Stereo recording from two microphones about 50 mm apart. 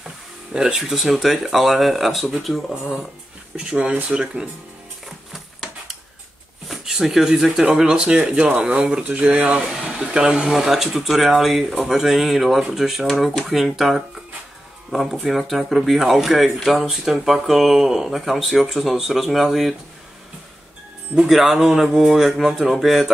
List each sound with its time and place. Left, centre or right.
0.5 s speech: centre
3.5 s speech: right
5.3 s a sound: centre
6.7 s speech: centre
21.3 s speech: centre